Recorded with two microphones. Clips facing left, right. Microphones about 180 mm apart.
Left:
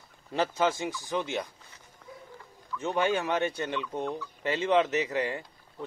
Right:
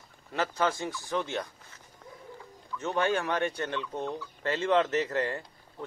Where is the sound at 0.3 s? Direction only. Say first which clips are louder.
Left 2 dB; 20° left (ahead or behind).